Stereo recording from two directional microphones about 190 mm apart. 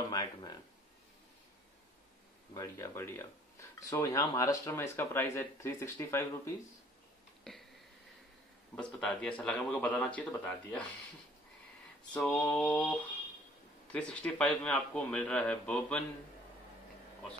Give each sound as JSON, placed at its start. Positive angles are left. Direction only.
{"t": 0.1, "sound": "speech", "side_deg": 20}
{"t": 2.5, "sound": "speech", "side_deg": 15}
{"t": 7.5, "sound": "a sound", "side_deg": 5}
{"t": 8.7, "sound": "speech", "side_deg": 5}
{"t": 12.1, "sound": "speech", "side_deg": 5}
{"t": 13.9, "sound": "speech", "side_deg": 5}